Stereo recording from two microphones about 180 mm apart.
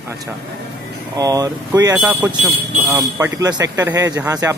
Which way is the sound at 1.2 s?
20° right (ahead or behind).